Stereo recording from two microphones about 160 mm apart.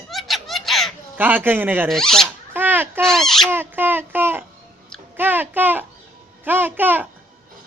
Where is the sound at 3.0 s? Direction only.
5° left (ahead or behind).